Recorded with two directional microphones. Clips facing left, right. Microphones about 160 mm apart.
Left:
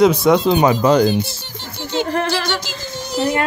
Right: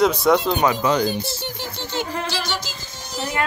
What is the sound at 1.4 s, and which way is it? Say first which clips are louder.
Music: right 4 dB; 10° right (ahead or behind).